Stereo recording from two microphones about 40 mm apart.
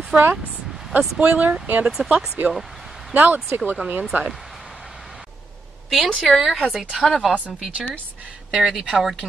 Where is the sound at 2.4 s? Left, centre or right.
Right.